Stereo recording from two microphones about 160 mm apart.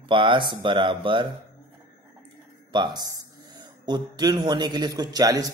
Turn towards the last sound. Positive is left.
turn(degrees=-25)  # may be behind; listen again after turning